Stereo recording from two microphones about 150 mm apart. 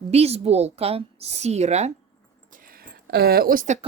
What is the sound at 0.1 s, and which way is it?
Speech, 45° right (ahead or behind).